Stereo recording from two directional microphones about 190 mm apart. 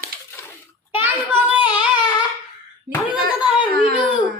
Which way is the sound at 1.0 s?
10° right (ahead or behind).